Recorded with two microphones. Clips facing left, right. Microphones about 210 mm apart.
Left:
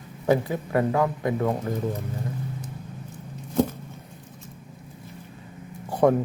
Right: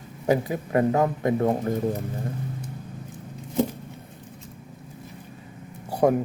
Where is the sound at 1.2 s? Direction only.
30° right (ahead or behind).